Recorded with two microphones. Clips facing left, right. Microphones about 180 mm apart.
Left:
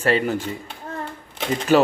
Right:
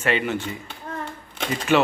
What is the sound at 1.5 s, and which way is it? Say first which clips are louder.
Speech: left 3 dB; 35° left (ahead or behind).